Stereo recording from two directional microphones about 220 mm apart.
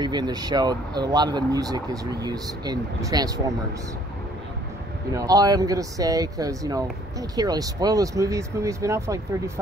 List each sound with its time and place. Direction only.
0.0 s speech: 20° right (ahead or behind)
5.1 s speech: 15° right (ahead or behind)